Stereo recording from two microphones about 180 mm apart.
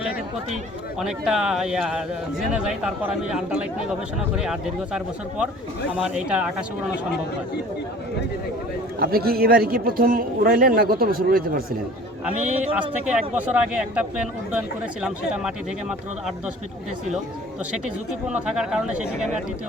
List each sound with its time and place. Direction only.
0.9 s speech: 5° right (ahead or behind)
9.0 s speech: 55° right (ahead or behind)
13.1 s speech: 10° right (ahead or behind)
17.7 s speech: 5° right (ahead or behind)